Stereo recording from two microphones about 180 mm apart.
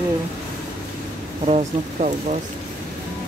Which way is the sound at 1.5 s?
35° right (ahead or behind).